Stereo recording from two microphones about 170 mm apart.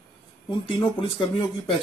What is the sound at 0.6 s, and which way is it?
Speech, 30° left (ahead or behind).